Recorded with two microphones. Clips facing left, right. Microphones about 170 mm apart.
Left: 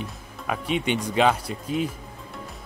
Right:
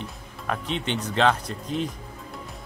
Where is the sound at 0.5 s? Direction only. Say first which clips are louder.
Left 3 dB; 10° left (ahead or behind).